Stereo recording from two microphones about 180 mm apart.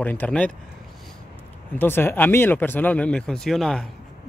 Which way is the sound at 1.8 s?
10° left (ahead or behind).